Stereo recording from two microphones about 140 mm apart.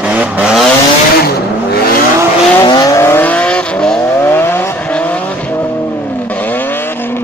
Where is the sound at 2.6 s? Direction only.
25° left (ahead or behind); by 5.2 s 10° left (ahead or behind).